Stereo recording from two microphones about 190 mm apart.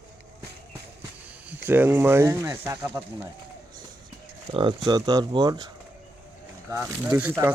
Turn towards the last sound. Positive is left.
turn(degrees=-10)  # may be behind; listen again after turning